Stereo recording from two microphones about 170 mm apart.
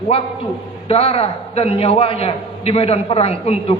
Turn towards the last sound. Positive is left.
turn(degrees=35)  # may be behind; listen again after turning